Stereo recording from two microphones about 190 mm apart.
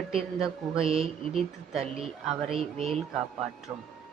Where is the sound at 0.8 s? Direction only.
30° right (ahead or behind).